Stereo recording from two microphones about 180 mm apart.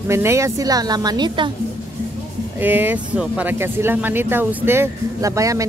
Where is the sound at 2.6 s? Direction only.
10° right (ahead or behind).